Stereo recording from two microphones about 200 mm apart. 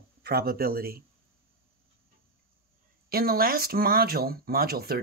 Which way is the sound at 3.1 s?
50° right (ahead or behind).